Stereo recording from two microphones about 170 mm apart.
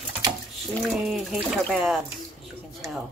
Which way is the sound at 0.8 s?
Centre (ahead or behind).